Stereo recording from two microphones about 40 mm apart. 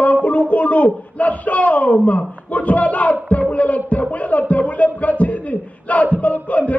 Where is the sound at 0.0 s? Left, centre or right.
Left.